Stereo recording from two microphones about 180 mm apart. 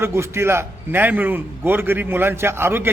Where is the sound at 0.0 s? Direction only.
15° right (ahead or behind).